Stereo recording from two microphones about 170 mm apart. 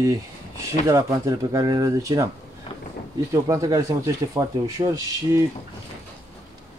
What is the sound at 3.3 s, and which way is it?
Speech, 20° right (ahead or behind).